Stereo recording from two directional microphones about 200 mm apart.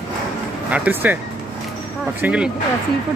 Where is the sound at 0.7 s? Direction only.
10° right (ahead or behind).